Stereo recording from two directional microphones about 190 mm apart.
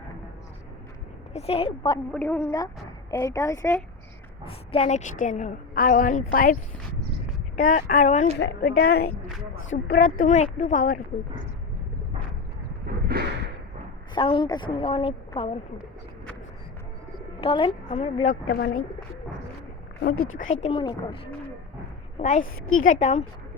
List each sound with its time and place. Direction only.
1.3 s a woman's voice: 35° left (ahead or behind)
2.1 s speech: 10° left (ahead or behind)
4.4 s a woman's voice: 30° left (ahead or behind)
8.6 s speech: 55° left (ahead or behind)
13.2 s a sound: 55° right (ahead or behind)
14.2 s speech: 25° left (ahead or behind)
17.4 s a woman's voice: 30° left (ahead or behind)
18.4 s speech: 50° left (ahead or behind)
20.0 s speech: 75° left (ahead or behind)
20.4 s a woman's voice: 35° left (ahead or behind)
22.2 s a woman's voice: 40° left (ahead or behind)
22.4 s a woman's voice: 90° left
22.8 s a woman's voice: 40° left (ahead or behind)